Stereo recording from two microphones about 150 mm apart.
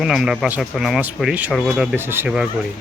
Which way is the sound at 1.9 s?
15° right (ahead or behind).